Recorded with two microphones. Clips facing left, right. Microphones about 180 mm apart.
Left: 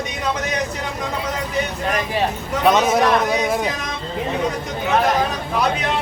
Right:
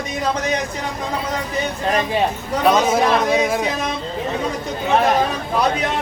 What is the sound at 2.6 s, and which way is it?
A man's voice, centre (ahead or behind).